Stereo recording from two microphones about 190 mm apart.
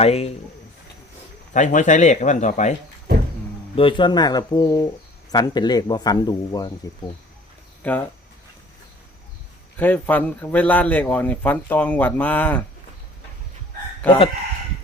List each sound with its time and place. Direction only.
0.0 s speech: 35° left (ahead or behind)
1.5 s speech: 40° left (ahead or behind)
3.8 s speech: 25° left (ahead or behind)
7.8 s speech: 10° left (ahead or behind)
9.7 s a man's voice: 10° left (ahead or behind)